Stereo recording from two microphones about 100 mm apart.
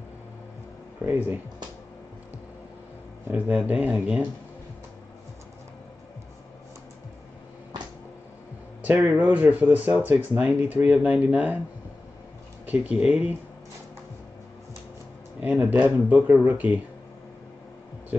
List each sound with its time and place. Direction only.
1.0 s speech: 20° right (ahead or behind)
3.3 s speech: 15° right (ahead or behind)
9.1 s speech: 15° right (ahead or behind)
12.6 s speech: 10° right (ahead or behind)
15.4 s speech: 15° right (ahead or behind)